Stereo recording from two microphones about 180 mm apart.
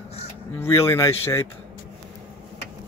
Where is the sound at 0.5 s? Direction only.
15° left (ahead or behind).